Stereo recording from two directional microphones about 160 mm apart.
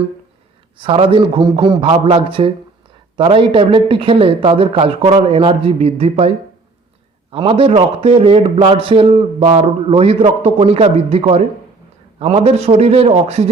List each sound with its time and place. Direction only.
0.8 s a man's voice: 35° right (ahead or behind)